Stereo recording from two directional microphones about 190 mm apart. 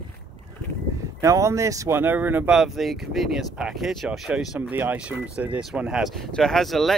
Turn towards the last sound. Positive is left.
turn(degrees=0)  # may be behind; listen again after turning